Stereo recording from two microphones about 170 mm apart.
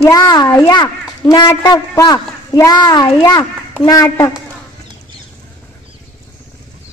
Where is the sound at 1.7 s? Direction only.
20° left (ahead or behind).